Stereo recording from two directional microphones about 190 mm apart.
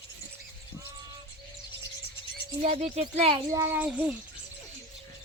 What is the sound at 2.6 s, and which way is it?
Speech, 35° right (ahead or behind).